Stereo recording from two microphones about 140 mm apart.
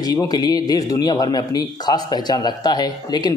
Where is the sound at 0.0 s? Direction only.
25° left (ahead or behind).